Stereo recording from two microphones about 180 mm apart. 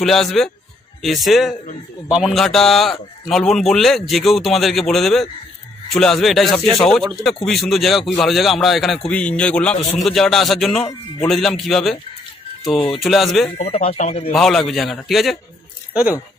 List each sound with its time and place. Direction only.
0.0 s a man's voice: centre (ahead or behind)
13.0 s a man's voice: centre (ahead or behind)
13.6 s speech: 35° left (ahead or behind)
14.3 s a man's voice: centre (ahead or behind)